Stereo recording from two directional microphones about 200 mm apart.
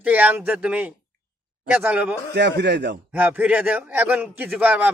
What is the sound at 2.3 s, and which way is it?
Speech, 60° right (ahead or behind).